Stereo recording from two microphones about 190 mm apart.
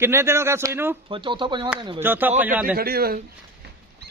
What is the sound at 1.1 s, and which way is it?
Speech, 25° right (ahead or behind).